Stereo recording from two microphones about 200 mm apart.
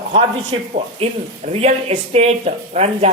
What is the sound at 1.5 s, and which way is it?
Speech, 30° right (ahead or behind).